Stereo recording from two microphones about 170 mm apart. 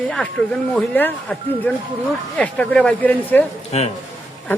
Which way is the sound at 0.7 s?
5° left (ahead or behind).